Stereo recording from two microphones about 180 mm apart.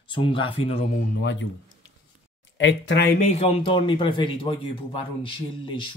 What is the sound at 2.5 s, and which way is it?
Speech, 85° left.